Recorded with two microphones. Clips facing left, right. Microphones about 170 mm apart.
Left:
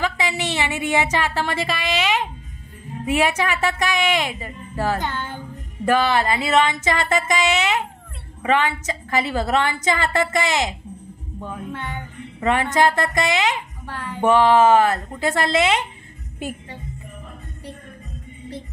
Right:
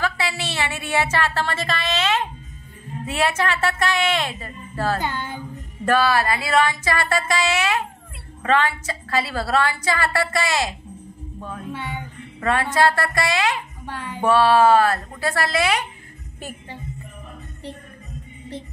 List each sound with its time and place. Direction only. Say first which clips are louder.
0.0 s speech: left 2 dB; 15° left (ahead or behind)
5.0 s music: even; 10° right (ahead or behind)
5.9 s a woman's voice: even; 20° left (ahead or behind)
11.7 s music: even; 10° right (ahead or behind)
12.4 s a woman's voice: left 1 dB; 15° left (ahead or behind)
13.8 s a sound: even; 15° right (ahead or behind)
14.2 s a woman's voice: left 1 dB; 20° left (ahead or behind)